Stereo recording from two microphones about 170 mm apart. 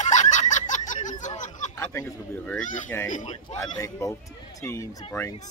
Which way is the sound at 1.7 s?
20° left (ahead or behind).